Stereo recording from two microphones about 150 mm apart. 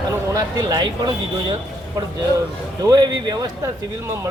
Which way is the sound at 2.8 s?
25° right (ahead or behind).